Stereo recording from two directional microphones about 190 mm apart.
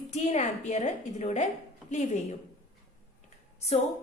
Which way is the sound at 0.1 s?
35° left (ahead or behind).